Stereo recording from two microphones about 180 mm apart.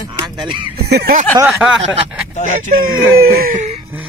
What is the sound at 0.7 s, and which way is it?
Speech, 60° right (ahead or behind).